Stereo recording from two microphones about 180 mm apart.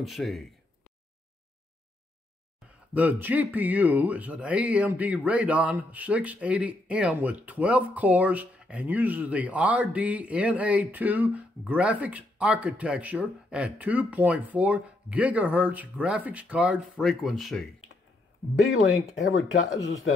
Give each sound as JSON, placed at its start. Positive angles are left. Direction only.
{"t": 0.0, "sound": "speech", "side_deg": 0}
{"t": 2.9, "sound": "speech", "side_deg": -10}
{"t": 19.5, "sound": "speech", "side_deg": 90}